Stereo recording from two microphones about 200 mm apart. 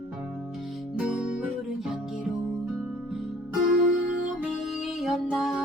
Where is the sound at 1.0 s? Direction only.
5° right (ahead or behind).